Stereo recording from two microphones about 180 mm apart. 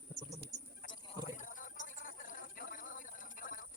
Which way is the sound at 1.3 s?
45° left (ahead or behind).